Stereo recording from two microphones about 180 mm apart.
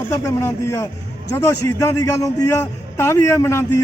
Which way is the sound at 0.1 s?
15° left (ahead or behind).